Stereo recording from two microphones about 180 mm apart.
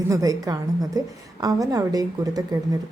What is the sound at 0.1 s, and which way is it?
A woman's voice, 20° right (ahead or behind).